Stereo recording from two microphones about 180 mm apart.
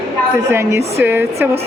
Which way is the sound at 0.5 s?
15° right (ahead or behind).